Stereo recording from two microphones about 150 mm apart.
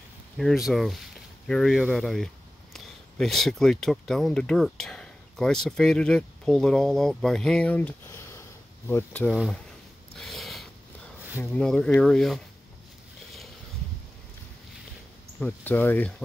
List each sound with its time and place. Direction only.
0.4 s speech: centre (ahead or behind)
9.3 s speech: centre (ahead or behind)
10.1 s a sound: centre (ahead or behind)
11.5 s speech: 5° left (ahead or behind)
15.3 s speech: 10° left (ahead or behind)